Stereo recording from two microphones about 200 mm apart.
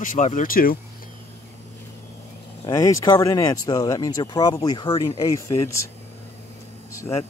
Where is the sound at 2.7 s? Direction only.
15° left (ahead or behind).